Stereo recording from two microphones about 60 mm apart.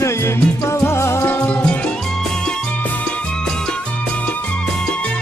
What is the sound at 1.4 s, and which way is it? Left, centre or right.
Music, left.